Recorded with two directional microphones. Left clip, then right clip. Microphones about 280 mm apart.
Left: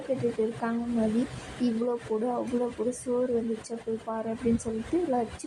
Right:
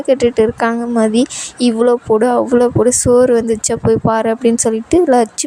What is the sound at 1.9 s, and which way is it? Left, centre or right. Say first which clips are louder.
A woman's voice: right 18 dB; right.